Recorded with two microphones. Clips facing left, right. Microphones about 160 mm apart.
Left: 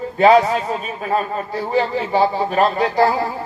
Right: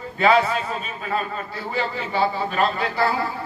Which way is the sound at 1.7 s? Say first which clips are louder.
Left 6 dB; 40° left (ahead or behind).